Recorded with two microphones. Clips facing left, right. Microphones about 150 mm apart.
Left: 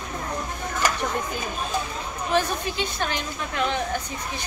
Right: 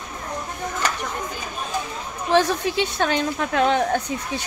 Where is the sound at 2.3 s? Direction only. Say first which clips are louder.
Right 5 dB; 90° right; by 4.4 s 70° right (ahead or behind).